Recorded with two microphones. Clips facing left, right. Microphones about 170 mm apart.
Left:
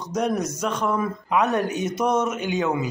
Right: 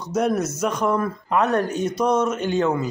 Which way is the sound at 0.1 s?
5° right (ahead or behind).